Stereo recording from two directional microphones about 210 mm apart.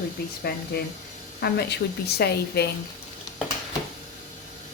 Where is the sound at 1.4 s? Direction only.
50° left (ahead or behind).